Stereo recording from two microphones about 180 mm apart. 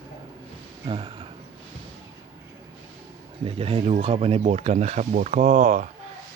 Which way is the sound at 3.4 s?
30° right (ahead or behind).